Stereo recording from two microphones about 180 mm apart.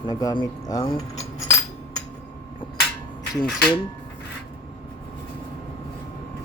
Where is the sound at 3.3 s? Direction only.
Centre (ahead or behind).